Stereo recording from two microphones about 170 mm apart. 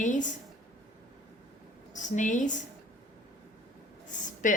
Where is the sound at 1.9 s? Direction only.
45° left (ahead or behind).